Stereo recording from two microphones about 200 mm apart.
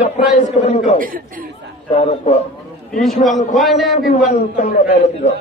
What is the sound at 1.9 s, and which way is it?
Speech, 30° left (ahead or behind).